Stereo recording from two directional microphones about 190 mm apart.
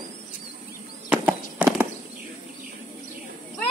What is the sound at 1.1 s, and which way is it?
Horse, 5° right (ahead or behind).